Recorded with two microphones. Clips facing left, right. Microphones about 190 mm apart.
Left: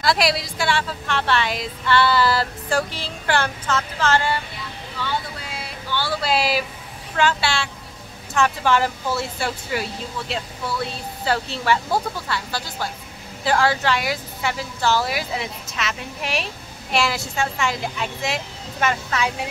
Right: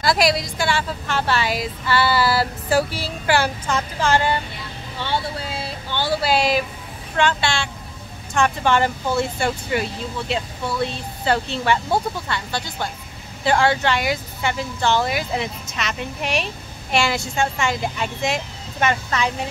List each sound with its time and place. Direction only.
0.0 s a woman's voice: centre (ahead or behind); by 4.4 s 15° right (ahead or behind)
4.9 s vehicle: 30° right (ahead or behind)
6.2 s speech: 5° left (ahead or behind)